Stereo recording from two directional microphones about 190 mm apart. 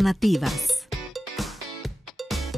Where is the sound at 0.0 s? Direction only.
Centre (ahead or behind).